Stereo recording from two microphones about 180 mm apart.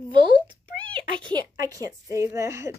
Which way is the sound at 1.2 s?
25° right (ahead or behind).